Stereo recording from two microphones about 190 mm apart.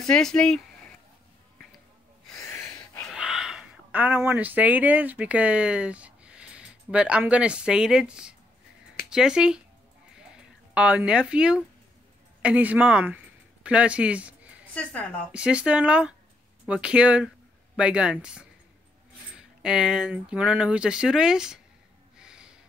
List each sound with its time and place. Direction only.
0.0 s speech: 5° left (ahead or behind)
2.3 s a sound: 15° left (ahead or behind)
3.1 s speech: 5° right (ahead or behind)
14.7 s a woman's voice: 5° left (ahead or behind)
15.3 s speech: 5° right (ahead or behind)
22.2 s music: 5° right (ahead or behind)